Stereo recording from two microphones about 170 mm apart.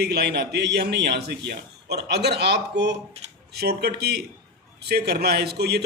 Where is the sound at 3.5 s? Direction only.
70° right (ahead or behind).